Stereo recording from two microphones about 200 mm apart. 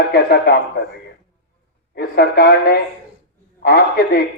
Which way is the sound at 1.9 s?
50° left (ahead or behind).